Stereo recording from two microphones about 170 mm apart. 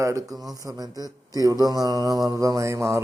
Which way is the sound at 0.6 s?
25° right (ahead or behind).